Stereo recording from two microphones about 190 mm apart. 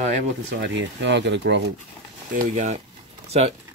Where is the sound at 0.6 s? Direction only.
70° right (ahead or behind).